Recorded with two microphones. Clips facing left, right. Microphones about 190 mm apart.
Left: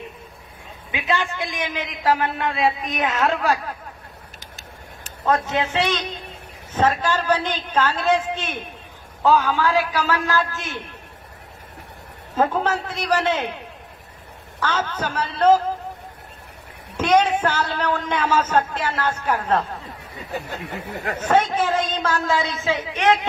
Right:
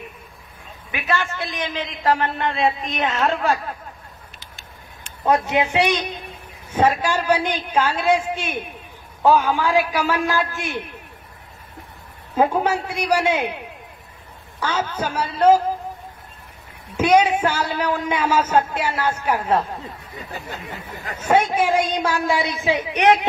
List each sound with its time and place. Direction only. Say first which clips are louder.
0.9 s a man's voice: even; 15° left (ahead or behind); by 3.7 s centre (ahead or behind)
4.4 s vehicle: left 2 dB; 40° left (ahead or behind)
5.2 s a man's voice: right 2 dB; 15° right (ahead or behind)
12.4 s a man's voice: right 2 dB; 10° right (ahead or behind)
14.6 s a man's voice: right 1 dB; 10° right (ahead or behind)
16.9 s a man's voice: right 2 dB; 10° right (ahead or behind)
20.8 s speech: left 5 dB; 65° left (ahead or behind)
21.2 s a man's voice: right 2 dB; 10° right (ahead or behind)